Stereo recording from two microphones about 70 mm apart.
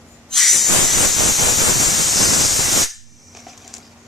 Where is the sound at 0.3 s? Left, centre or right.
Centre.